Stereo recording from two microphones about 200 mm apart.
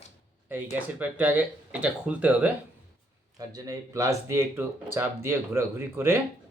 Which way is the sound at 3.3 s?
15° right (ahead or behind).